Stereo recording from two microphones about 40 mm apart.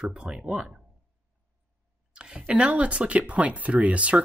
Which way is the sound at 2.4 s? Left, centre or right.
Right.